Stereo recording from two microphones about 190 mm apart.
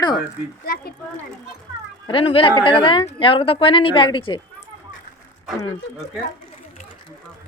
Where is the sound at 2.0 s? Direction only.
30° left (ahead or behind).